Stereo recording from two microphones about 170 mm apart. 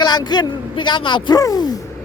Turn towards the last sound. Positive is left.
turn(degrees=20)  # may be behind; listen again after turning